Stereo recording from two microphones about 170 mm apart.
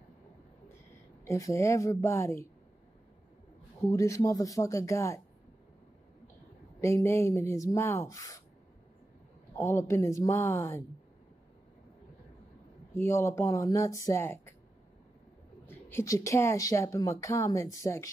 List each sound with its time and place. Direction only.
1.2 s speech: 15° left (ahead or behind)
3.9 s speech: 20° left (ahead or behind)
6.8 s speech: 15° left (ahead or behind)
9.6 s speech: 15° left (ahead or behind)
12.9 s speech: 15° left (ahead or behind)
15.6 s speech: 15° left (ahead or behind)